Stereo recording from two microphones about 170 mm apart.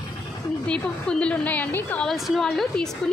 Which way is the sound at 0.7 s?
5° left (ahead or behind).